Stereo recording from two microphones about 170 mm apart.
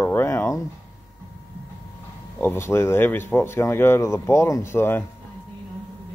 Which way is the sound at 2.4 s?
15° left (ahead or behind).